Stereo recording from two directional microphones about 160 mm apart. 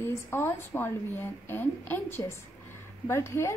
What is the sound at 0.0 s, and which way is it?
A woman's voice, 15° left (ahead or behind).